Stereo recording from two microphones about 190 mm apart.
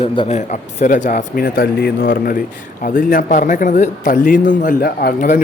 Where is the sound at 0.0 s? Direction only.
35° left (ahead or behind).